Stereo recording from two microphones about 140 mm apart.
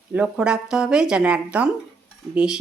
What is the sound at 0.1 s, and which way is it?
Speech, 10° right (ahead or behind).